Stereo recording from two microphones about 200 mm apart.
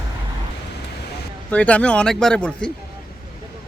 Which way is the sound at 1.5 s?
5° left (ahead or behind).